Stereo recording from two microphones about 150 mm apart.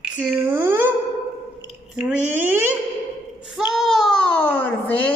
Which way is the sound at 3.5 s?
Centre (ahead or behind).